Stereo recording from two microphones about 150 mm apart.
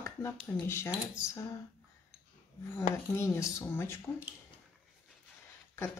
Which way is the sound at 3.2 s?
20° left (ahead or behind).